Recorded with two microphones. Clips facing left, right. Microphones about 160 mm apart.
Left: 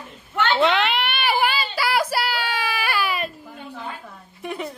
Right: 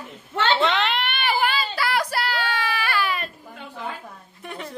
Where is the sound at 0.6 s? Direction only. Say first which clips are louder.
Left 2 dB; 5° left (ahead or behind).